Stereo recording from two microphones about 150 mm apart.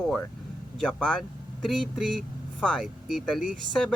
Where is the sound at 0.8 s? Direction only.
5° left (ahead or behind).